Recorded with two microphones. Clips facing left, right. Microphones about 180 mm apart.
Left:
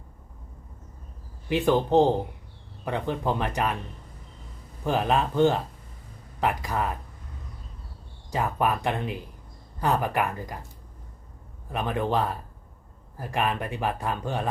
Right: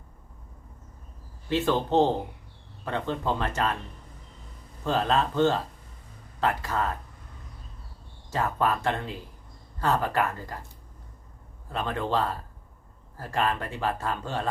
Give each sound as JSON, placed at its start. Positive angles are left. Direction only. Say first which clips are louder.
{"t": 1.5, "sound": "speech", "louder": "left 3 dB", "side_deg": 15}
{"t": 4.8, "sound": "speech", "louder": "left 1 dB", "side_deg": 15}
{"t": 8.3, "sound": "speech", "louder": "left 1 dB", "side_deg": 15}
{"t": 11.7, "sound": "speech", "louder": "left 2 dB", "side_deg": 15}